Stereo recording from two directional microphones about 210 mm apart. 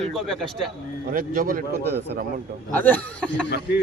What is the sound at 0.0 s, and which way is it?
Speech, centre (ahead or behind).